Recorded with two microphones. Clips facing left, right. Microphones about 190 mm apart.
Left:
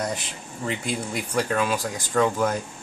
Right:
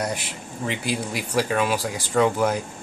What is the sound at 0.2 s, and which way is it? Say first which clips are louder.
Speech: right 2 dB; 75° right (ahead or behind).